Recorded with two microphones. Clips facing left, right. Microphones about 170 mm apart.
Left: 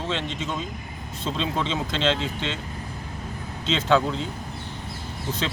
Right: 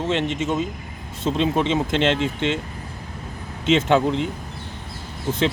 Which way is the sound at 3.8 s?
20° right (ahead or behind).